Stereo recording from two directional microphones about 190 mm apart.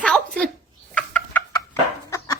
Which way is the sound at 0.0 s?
5° left (ahead or behind).